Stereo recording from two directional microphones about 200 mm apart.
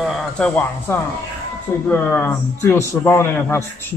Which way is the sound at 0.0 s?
5° left (ahead or behind).